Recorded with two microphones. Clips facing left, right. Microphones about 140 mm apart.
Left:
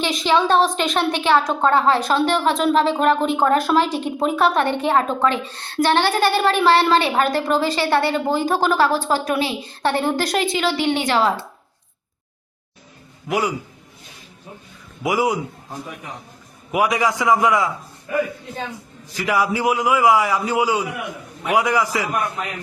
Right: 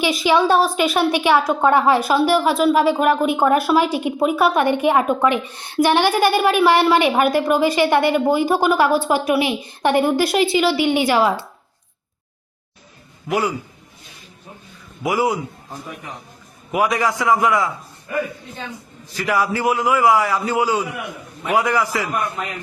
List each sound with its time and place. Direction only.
0.0 s a woman's voice: 5° right (ahead or behind)
13.2 s a man's voice: 15° left (ahead or behind)
15.0 s a man's voice: 15° left (ahead or behind)
16.7 s a man's voice: 10° left (ahead or behind)
19.1 s a man's voice: 15° left (ahead or behind)